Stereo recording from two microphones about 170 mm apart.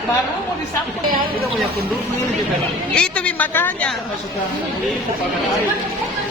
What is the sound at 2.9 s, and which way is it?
Speech, 5° left (ahead or behind).